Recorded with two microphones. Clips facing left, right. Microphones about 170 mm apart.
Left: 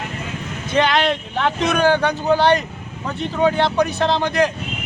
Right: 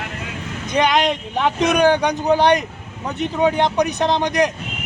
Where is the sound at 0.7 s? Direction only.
15° right (ahead or behind).